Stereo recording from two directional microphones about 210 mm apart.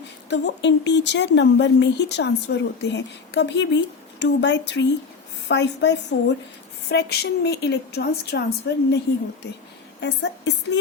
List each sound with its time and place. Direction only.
0.3 s a woman's voice: 55° left (ahead or behind)
10.0 s speech: 55° left (ahead or behind)